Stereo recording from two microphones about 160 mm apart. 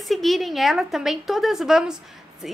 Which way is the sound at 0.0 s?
Centre (ahead or behind).